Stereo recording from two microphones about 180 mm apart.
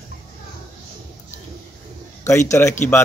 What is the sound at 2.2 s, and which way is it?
Speech, 15° left (ahead or behind).